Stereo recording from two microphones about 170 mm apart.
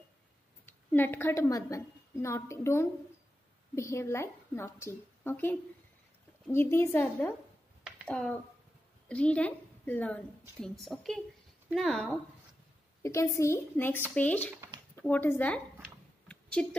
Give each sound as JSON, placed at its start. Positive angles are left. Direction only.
{"t": 0.7, "sound": "a woman's voice", "side_deg": 10}
{"t": 13.0, "sound": "a woman's voice", "side_deg": 15}
{"t": 16.3, "sound": "a sound", "side_deg": 5}